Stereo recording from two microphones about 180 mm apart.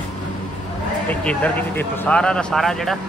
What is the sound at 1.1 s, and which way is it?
Speech, 5° left (ahead or behind).